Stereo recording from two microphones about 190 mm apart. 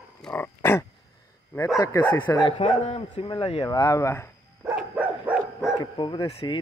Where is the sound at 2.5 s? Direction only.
30° left (ahead or behind); by 4.3 s 15° left (ahead or behind).